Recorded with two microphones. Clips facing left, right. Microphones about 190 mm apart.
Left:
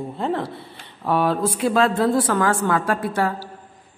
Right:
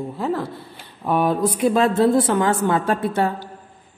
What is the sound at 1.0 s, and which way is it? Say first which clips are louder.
A woman's voice: right 1 dB; 15° right (ahead or behind).